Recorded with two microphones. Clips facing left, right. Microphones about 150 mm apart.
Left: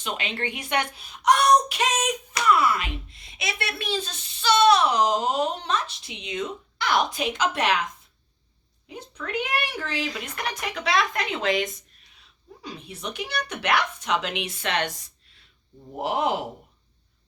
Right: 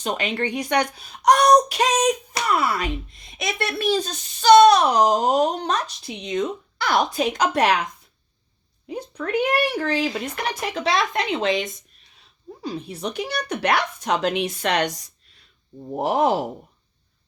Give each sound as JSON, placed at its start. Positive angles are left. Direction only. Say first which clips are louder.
{"t": 0.0, "sound": "speech", "louder": "right 6 dB", "side_deg": -40}
{"t": 8.9, "sound": "speech", "louder": "right 7 dB", "side_deg": -35}
{"t": 16.0, "sound": "speech", "louder": "right 5 dB", "side_deg": -40}